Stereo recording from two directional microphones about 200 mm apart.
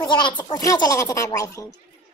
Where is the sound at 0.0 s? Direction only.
20° left (ahead or behind).